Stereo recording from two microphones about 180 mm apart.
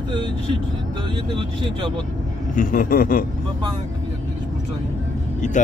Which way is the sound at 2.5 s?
50° left (ahead or behind).